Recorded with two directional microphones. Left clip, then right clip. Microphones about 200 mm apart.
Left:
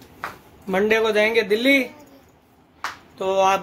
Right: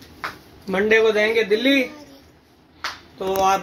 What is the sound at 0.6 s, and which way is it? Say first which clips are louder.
Speech: right 2 dB; 25° left (ahead or behind).